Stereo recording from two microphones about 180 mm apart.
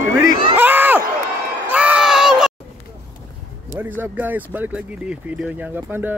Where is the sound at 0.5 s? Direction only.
10° right (ahead or behind).